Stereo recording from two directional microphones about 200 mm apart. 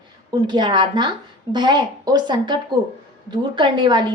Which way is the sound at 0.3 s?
20° right (ahead or behind).